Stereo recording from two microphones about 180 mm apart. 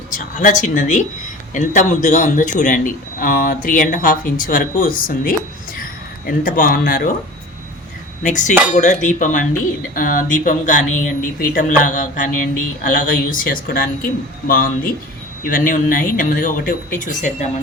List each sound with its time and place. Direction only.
0.1 s speech: 45° left (ahead or behind)
8.2 s speech: 45° left (ahead or behind)